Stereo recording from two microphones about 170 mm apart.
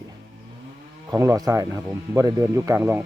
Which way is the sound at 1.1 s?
20° right (ahead or behind).